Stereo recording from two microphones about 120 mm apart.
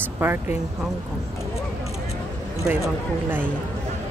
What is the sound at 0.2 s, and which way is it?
Speech, 20° right (ahead or behind).